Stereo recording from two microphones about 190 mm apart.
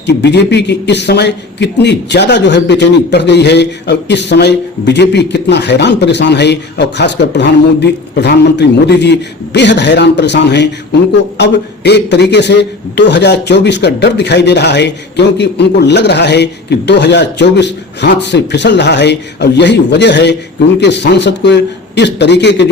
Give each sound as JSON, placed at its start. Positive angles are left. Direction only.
{"t": 0.0, "sound": "a man's voice", "side_deg": 65}